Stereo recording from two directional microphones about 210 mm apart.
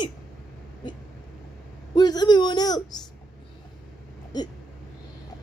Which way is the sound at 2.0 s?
20° left (ahead or behind).